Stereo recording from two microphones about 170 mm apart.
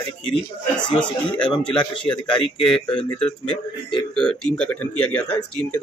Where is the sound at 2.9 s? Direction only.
30° left (ahead or behind).